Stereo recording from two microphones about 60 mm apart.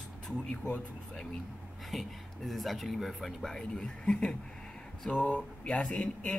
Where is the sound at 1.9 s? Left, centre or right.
Centre.